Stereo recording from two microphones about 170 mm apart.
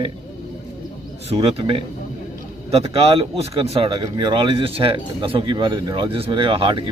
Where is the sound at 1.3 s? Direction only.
35° right (ahead or behind).